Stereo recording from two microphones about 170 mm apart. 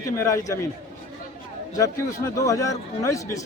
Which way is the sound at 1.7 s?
20° left (ahead or behind).